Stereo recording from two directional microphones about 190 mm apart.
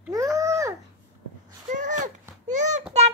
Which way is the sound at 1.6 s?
40° right (ahead or behind).